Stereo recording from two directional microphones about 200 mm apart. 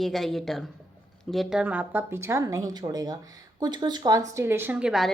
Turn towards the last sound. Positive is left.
turn(degrees=-5)  # may be behind; listen again after turning